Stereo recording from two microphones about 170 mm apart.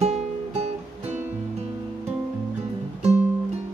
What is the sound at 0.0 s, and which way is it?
Music, 35° right (ahead or behind).